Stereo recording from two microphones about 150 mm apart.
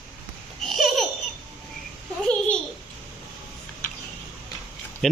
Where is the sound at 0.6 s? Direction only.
Centre (ahead or behind).